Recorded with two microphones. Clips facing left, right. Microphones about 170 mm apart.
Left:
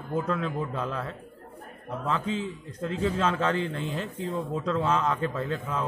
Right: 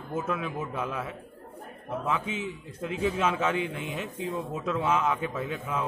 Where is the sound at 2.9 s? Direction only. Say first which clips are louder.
Even; 10° right (ahead or behind).